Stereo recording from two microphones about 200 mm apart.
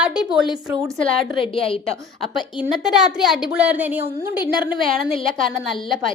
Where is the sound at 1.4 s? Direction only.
25° left (ahead or behind).